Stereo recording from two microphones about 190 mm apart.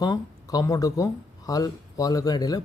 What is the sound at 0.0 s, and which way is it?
Speech, 20° left (ahead or behind).